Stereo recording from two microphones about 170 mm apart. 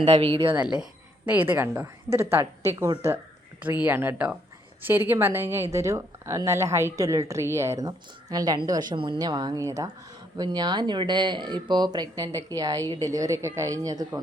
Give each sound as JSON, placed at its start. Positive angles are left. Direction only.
{"t": 0.0, "sound": "a woman's voice", "side_deg": -35}
{"t": 0.7, "sound": "a woman's voice", "side_deg": -5}